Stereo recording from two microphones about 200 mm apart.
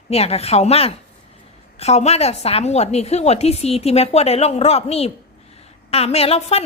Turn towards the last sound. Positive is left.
turn(degrees=30)  # may be behind; listen again after turning